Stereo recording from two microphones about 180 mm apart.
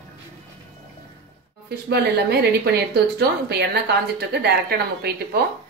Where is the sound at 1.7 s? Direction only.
65° right (ahead or behind).